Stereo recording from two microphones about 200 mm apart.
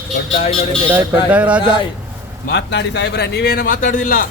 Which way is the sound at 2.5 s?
60° left (ahead or behind).